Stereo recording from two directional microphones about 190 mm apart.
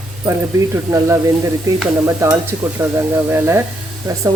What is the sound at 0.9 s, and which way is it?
Speech, 15° right (ahead or behind).